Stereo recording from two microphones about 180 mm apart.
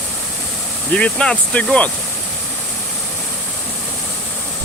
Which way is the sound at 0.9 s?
5° left (ahead or behind).